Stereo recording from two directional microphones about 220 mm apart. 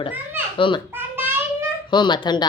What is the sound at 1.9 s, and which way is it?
Speech, 20° left (ahead or behind).